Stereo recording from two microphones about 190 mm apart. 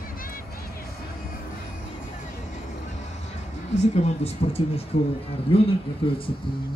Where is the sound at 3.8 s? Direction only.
35° left (ahead or behind).